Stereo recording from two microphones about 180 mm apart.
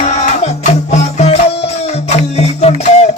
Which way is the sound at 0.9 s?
35° left (ahead or behind).